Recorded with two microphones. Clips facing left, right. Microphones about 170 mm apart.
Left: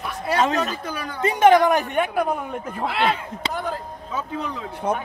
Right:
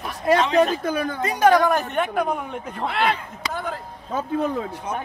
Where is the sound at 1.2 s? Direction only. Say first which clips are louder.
Left 3 dB; 25° left (ahead or behind); by 3.2 s centre (ahead or behind).